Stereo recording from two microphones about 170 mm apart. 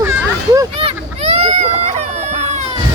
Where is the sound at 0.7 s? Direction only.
35° right (ahead or behind).